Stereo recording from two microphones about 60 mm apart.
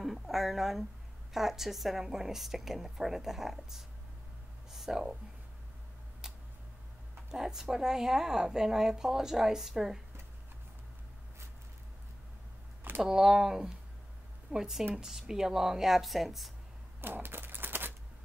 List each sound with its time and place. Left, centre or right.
0.0 s a woman's voice: centre
4.6 s a sound: centre
6.2 s tick-tock: centre
7.2 s a woman's voice: centre
13.0 s a woman's voice: centre
17.0 s typewriter: right